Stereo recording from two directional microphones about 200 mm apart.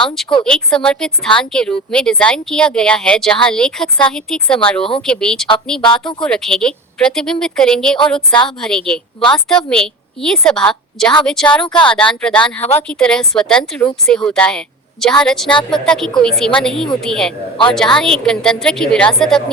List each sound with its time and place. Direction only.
0.1 s speech: centre (ahead or behind)
4.8 s speech: 25° left (ahead or behind)
5.0 s speech: 5° left (ahead or behind)
5.8 s speech: 25° left (ahead or behind)
6.2 s speech: 5° left (ahead or behind)